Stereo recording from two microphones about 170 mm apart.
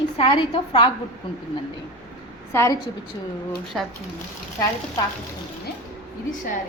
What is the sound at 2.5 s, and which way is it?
Speech, 15° left (ahead or behind).